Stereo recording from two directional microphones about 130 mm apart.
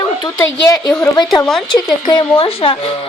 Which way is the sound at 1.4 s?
5° left (ahead or behind).